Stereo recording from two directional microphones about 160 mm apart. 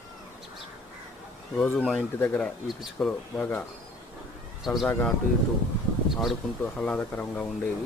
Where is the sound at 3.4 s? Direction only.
10° left (ahead or behind).